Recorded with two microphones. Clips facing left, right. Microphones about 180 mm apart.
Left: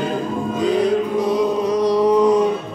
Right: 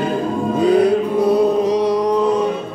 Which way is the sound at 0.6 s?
60° right (ahead or behind).